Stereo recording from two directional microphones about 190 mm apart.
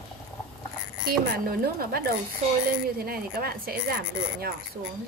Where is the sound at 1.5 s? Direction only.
50° right (ahead or behind).